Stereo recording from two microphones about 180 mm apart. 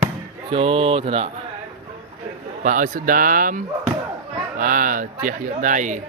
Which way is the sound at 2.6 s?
45° right (ahead or behind).